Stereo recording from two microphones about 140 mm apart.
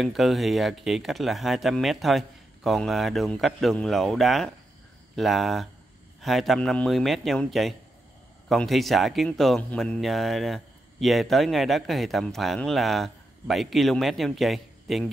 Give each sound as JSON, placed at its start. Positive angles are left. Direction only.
{"t": 0.0, "sound": "speech", "side_deg": 0}